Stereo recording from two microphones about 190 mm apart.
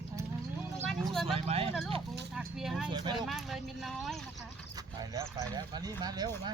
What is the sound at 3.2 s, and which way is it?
Speech, centre (ahead or behind).